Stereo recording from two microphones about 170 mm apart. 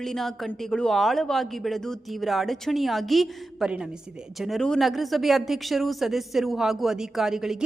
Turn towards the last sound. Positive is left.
turn(degrees=-5)  # may be behind; listen again after turning